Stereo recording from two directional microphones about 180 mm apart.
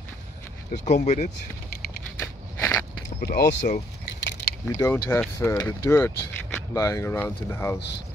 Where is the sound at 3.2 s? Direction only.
50° left (ahead or behind).